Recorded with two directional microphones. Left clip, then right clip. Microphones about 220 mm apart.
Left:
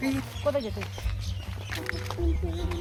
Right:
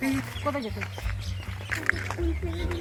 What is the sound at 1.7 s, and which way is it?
Music, 20° left (ahead or behind).